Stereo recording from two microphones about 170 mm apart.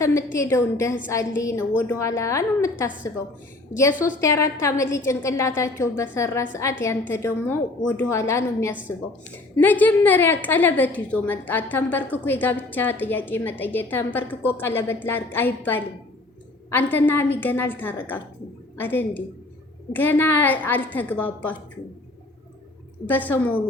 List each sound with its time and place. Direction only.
0.0 s a woman's voice: 20° left (ahead or behind)
4.0 s a woman's voice: 15° left (ahead or behind)
23.0 s a woman's voice: 10° left (ahead or behind)